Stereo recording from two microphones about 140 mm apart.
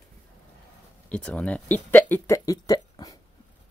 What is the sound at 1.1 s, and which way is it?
Speech, 10° left (ahead or behind).